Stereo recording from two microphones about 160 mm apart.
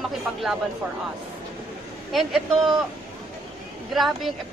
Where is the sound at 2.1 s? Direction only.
Centre (ahead or behind).